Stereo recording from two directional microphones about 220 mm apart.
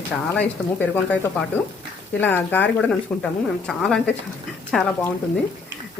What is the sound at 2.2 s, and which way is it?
Speech, 10° left (ahead or behind).